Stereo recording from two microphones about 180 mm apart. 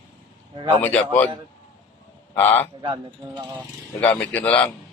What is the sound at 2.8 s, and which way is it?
Speech, 25° right (ahead or behind).